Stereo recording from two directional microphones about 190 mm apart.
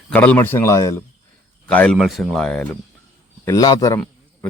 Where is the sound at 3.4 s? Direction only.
20° left (ahead or behind).